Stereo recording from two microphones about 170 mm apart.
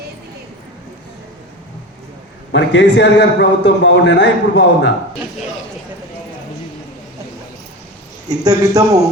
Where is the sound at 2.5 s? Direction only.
90° left.